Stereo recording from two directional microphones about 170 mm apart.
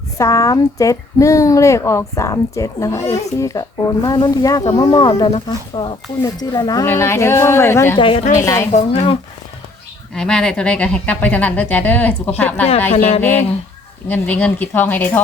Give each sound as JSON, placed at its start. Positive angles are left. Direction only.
{"t": 0.2, "sound": "speech", "side_deg": 20}
{"t": 7.9, "sound": "speech", "side_deg": 30}
{"t": 8.4, "sound": "speech", "side_deg": 15}
{"t": 8.7, "sound": "speech", "side_deg": 45}
{"t": 10.2, "sound": "speech", "side_deg": 5}
{"t": 12.9, "sound": "speech", "side_deg": 35}
{"t": 14.1, "sound": "speech", "side_deg": 10}